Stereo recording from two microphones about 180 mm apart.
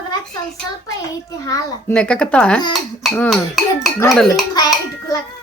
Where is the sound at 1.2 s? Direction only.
20° left (ahead or behind).